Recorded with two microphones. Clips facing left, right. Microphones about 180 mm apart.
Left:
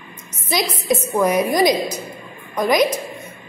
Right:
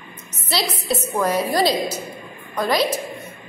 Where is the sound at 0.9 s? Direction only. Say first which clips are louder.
Left 4 dB; 10° left (ahead or behind).